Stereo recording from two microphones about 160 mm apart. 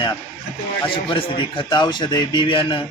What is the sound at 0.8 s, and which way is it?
A man's voice, 35° left (ahead or behind).